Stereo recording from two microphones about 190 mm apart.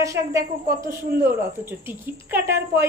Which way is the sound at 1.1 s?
55° right (ahead or behind).